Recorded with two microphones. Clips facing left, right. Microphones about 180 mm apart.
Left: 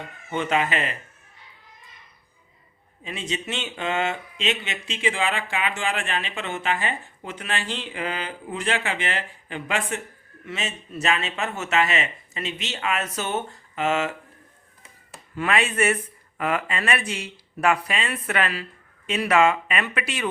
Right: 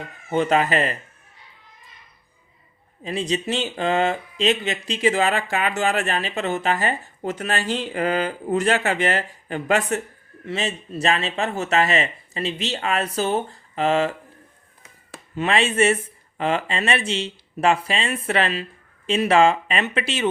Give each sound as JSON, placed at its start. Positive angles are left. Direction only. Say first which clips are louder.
{"t": 0.3, "sound": "speech", "louder": "right 5 dB", "side_deg": -35}
{"t": 3.0, "sound": "speech", "louder": "right 7 dB", "side_deg": -35}
{"t": 15.4, "sound": "speech", "louder": "right 3 dB", "side_deg": -25}